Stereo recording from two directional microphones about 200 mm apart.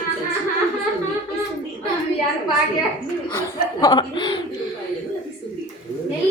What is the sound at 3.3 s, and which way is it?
Chuckle, 20° left (ahead or behind).